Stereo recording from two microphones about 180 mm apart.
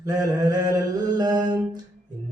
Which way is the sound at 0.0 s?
20° right (ahead or behind).